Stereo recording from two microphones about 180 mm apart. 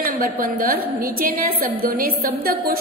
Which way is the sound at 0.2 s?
50° right (ahead or behind).